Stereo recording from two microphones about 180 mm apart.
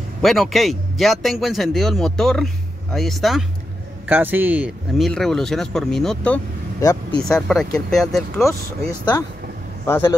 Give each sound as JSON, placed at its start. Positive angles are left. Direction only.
{"t": 0.2, "sound": "speech", "side_deg": 0}
{"t": 6.8, "sound": "speech", "side_deg": 15}
{"t": 7.2, "sound": "speech", "side_deg": 5}